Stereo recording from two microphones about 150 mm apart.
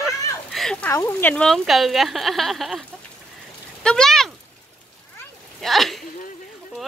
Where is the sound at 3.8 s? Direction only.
5° left (ahead or behind).